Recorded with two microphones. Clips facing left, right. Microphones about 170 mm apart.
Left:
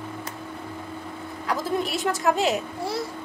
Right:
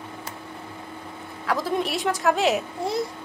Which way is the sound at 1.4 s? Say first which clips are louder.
Right 1 dB; centre (ahead or behind).